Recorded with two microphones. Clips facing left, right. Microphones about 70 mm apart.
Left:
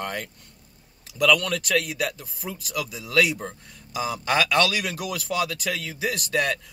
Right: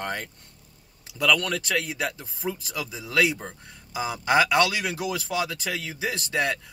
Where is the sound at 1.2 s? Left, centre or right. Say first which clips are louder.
Left 2 dB; right.